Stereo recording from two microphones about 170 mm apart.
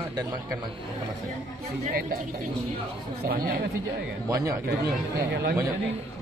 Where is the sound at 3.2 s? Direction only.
60° right (ahead or behind).